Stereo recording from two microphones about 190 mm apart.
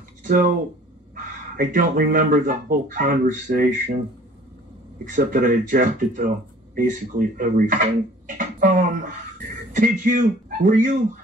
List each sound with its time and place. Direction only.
0.2 s a sound: 45° right (ahead or behind)
1.1 s speech: 45° right (ahead or behind)
5.0 s speech: 45° right (ahead or behind)